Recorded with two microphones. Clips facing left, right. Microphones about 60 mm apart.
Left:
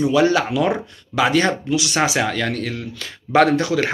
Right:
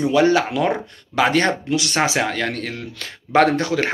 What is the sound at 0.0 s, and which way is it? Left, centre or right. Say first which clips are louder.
Speech: even; right.